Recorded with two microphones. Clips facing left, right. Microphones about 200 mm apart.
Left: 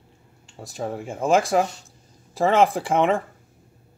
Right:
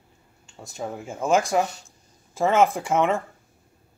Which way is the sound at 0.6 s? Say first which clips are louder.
Left 3 dB; 35° left (ahead or behind).